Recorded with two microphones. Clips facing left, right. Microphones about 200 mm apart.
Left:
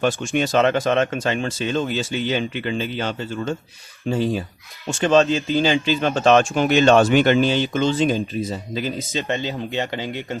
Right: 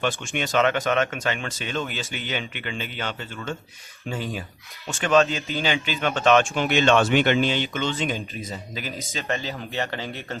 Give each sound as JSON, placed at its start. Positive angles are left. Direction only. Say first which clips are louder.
{"t": 0.0, "sound": "speech", "louder": "left 6 dB", "side_deg": 40}
{"t": 8.8, "sound": "speech", "louder": "left 8 dB", "side_deg": 20}